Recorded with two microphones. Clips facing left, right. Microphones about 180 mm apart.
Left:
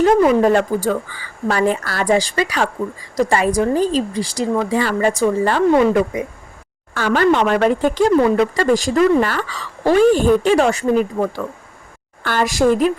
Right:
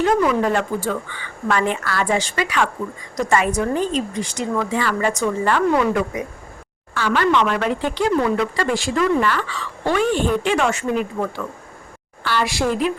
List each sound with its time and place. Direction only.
0.0 s speech: 40° left (ahead or behind)
6.9 s a woman's voice: 45° left (ahead or behind)